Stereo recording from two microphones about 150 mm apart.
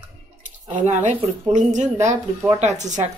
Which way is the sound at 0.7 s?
55° right (ahead or behind).